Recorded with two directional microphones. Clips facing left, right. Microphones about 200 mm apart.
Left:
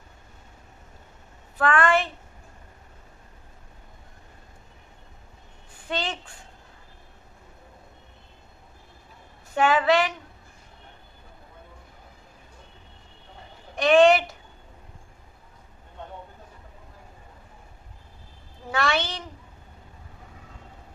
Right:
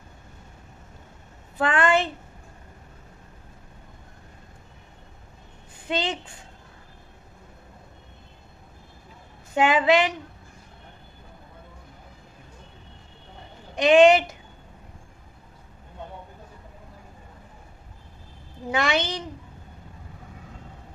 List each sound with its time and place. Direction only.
1.6 s a woman's voice: 20° right (ahead or behind)
5.9 s speech: 20° right (ahead or behind)
9.6 s a child's voice: 15° right (ahead or behind)
13.7 s a child's voice: 15° right (ahead or behind)
18.7 s a child's voice: 15° right (ahead or behind)